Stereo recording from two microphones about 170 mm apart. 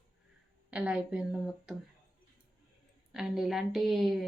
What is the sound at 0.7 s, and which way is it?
A woman's voice, 5° right (ahead or behind).